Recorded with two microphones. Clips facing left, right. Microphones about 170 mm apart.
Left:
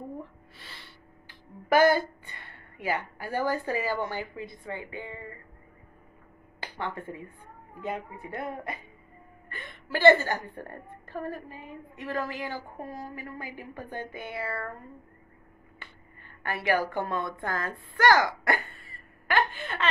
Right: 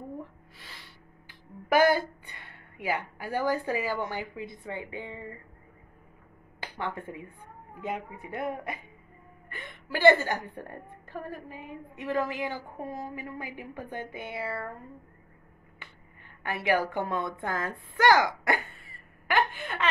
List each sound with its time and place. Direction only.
1.7 s a woman's voice: 15° right (ahead or behind)
6.6 s a woman's voice: 15° right (ahead or behind)
14.3 s a woman's voice: 10° right (ahead or behind)
15.8 s a sound: 15° right (ahead or behind)
16.9 s speech: 15° right (ahead or behind)